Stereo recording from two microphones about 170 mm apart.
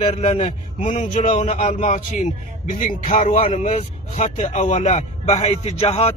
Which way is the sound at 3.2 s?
35° left (ahead or behind).